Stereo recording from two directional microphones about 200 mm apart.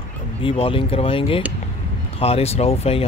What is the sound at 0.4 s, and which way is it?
Speech, 25° left (ahead or behind).